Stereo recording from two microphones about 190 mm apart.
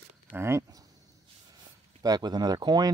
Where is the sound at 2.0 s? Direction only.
20° right (ahead or behind).